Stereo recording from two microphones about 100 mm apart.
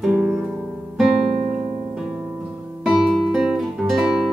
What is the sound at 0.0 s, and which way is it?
Music, 15° right (ahead or behind).